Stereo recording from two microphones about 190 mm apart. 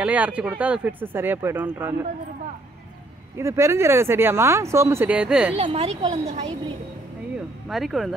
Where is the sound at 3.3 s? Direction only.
15° right (ahead or behind).